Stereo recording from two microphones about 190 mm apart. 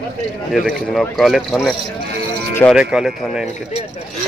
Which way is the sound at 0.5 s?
Centre (ahead or behind).